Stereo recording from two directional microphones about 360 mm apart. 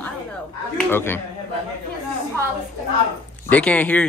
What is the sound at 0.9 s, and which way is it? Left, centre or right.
Speech, centre.